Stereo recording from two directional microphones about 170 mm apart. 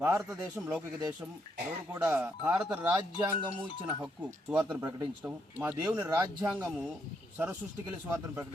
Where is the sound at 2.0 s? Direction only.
10° right (ahead or behind).